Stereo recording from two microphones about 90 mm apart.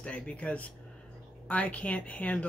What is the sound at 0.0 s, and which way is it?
Speech, 15° left (ahead or behind).